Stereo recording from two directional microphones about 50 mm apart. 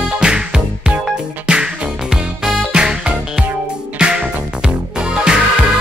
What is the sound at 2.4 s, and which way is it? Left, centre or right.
Music, centre.